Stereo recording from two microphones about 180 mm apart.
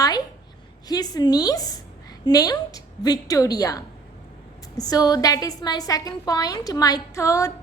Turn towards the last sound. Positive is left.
turn(degrees=15)  # may be behind; listen again after turning